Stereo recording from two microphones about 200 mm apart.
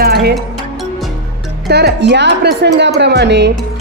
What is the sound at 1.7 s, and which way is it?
Speech, 55° right (ahead or behind).